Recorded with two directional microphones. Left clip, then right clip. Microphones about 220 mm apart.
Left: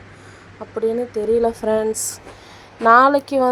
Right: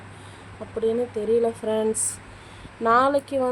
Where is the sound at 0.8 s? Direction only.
20° left (ahead or behind).